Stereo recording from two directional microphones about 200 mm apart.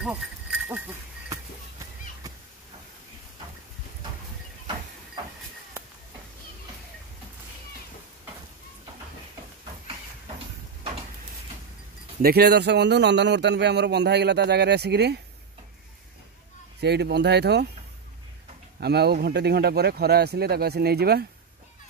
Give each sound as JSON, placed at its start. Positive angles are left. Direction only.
{"t": 0.0, "sound": "insect", "side_deg": -5}
{"t": 12.2, "sound": "a man's voice", "side_deg": -50}
{"t": 16.8, "sound": "a man's voice", "side_deg": -55}
{"t": 18.8, "sound": "speech", "side_deg": -55}